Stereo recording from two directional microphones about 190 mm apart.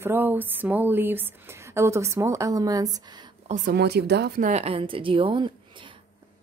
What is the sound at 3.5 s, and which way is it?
A woman's voice, 55° right (ahead or behind).